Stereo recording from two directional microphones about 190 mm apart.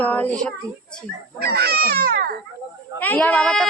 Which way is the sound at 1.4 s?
55° right (ahead or behind).